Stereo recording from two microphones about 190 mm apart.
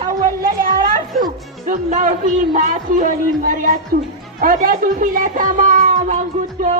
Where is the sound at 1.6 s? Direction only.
40° right (ahead or behind).